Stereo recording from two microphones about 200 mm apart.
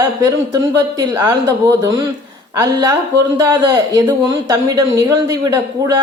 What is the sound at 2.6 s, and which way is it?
A woman's voice, 15° right (ahead or behind).